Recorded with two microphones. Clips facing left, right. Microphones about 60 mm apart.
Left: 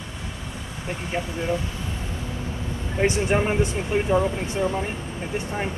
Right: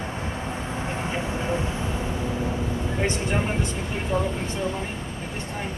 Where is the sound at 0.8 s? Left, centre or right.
Right.